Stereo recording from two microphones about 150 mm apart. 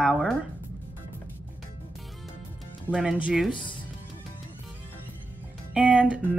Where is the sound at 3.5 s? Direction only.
35° left (ahead or behind).